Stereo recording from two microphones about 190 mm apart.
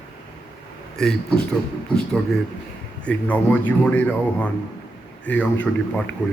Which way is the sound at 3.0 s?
10° left (ahead or behind).